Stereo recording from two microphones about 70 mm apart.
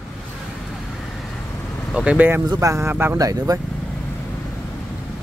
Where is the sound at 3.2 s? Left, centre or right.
Right.